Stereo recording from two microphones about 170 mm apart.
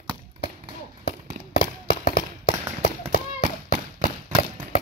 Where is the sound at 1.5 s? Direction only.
30° left (ahead or behind).